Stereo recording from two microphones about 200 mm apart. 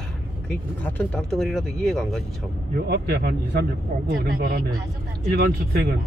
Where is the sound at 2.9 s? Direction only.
50° right (ahead or behind).